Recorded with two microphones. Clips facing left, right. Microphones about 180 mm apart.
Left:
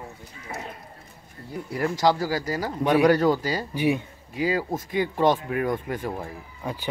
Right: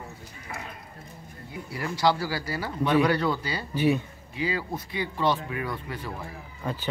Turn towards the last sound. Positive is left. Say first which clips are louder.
# even
turn(degrees=15)  # may be behind; listen again after turning